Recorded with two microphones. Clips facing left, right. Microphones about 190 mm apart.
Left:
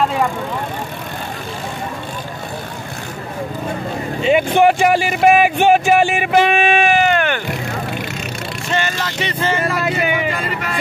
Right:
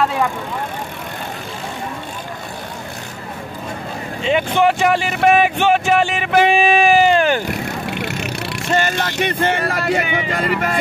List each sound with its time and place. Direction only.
4.2 s speech: 10° left (ahead or behind)
6.5 s vehicle: 35° right (ahead or behind)
8.7 s speech: 45° right (ahead or behind)
9.1 s speech: 55° right (ahead or behind)